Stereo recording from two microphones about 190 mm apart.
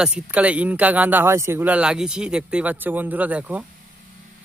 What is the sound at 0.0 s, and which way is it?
Speech, 5° right (ahead or behind).